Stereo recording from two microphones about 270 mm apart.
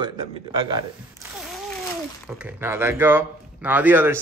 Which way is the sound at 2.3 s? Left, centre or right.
Centre.